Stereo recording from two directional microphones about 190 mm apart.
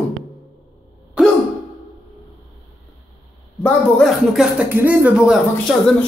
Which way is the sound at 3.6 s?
Centre (ahead or behind).